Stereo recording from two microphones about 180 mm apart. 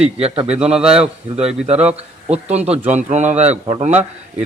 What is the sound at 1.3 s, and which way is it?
A man's voice, 35° right (ahead or behind).